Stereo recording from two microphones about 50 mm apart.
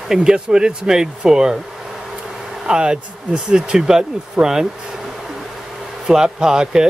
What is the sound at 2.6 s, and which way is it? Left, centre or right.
Speech, centre.